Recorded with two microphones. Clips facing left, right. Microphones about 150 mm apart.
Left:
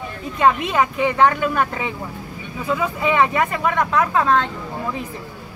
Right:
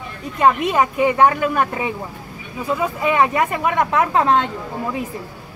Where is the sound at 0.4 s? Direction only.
5° right (ahead or behind).